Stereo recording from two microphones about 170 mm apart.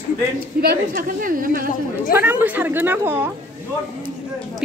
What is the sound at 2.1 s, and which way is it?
A woman's voice, 10° right (ahead or behind).